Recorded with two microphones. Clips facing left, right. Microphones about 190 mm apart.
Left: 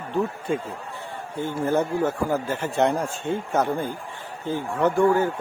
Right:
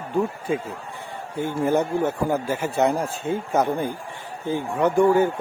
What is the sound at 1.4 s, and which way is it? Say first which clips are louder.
Speech: right 2 dB; 15° right (ahead or behind).